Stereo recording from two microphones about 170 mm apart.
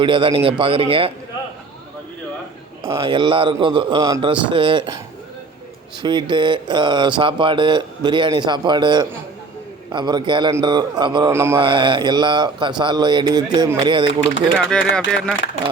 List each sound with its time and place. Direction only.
0.0 s a man's voice: 30° right (ahead or behind)
3.0 s speech: 30° right (ahead or behind)
6.0 s speech: 25° right (ahead or behind)
14.6 s speech: 5° left (ahead or behind)